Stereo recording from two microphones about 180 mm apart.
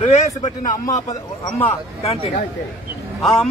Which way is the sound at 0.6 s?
20° left (ahead or behind).